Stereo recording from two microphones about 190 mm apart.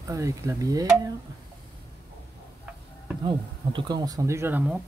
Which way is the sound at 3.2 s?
25° right (ahead or behind).